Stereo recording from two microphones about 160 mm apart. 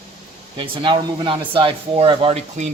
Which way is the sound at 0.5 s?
30° right (ahead or behind).